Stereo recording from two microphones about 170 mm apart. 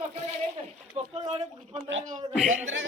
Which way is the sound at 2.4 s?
45° right (ahead or behind).